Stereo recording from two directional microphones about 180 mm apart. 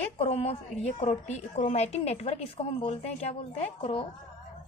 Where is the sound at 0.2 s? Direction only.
35° left (ahead or behind).